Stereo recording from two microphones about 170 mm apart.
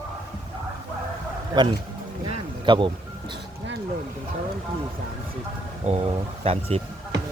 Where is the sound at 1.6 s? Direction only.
25° right (ahead or behind).